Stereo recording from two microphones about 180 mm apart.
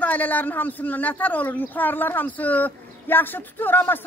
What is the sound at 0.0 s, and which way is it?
Speech, 10° left (ahead or behind).